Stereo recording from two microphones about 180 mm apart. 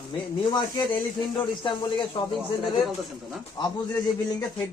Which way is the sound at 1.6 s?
25° left (ahead or behind).